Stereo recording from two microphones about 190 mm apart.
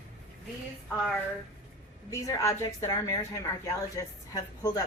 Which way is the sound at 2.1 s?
15° left (ahead or behind).